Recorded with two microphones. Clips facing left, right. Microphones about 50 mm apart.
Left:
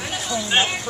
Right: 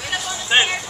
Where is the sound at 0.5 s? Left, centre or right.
Centre.